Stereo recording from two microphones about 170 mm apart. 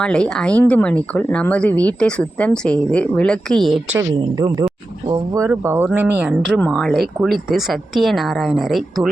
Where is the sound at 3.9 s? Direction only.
20° right (ahead or behind).